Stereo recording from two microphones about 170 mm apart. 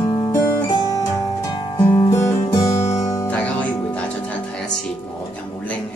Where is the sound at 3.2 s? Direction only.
10° left (ahead or behind).